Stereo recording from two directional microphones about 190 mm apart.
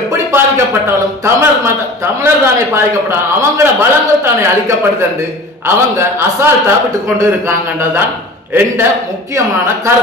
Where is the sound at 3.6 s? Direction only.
15° right (ahead or behind).